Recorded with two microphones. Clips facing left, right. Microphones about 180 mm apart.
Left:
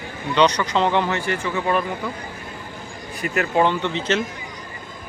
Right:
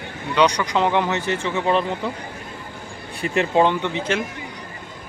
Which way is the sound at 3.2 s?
25° right (ahead or behind).